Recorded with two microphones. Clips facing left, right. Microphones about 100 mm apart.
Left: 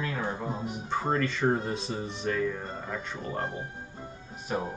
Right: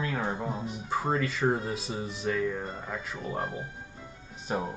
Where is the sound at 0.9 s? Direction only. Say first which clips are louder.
Even; 5° right (ahead or behind).